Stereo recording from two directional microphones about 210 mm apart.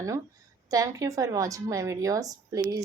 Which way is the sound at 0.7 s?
15° right (ahead or behind).